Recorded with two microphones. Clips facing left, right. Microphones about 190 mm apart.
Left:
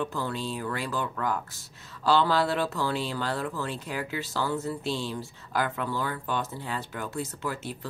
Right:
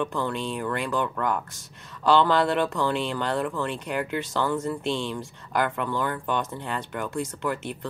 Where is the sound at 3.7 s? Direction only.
60° right (ahead or behind).